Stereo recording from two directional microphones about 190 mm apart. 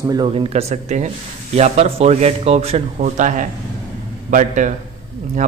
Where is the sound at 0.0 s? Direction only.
20° right (ahead or behind).